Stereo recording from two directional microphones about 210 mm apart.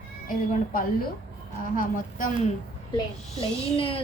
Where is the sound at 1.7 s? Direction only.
40° left (ahead or behind).